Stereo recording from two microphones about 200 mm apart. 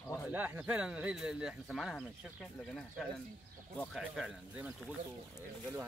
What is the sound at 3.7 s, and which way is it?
Speech, 5° left (ahead or behind).